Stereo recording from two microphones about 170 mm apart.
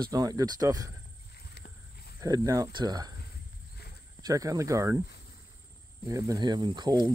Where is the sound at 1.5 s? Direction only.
70° left (ahead or behind).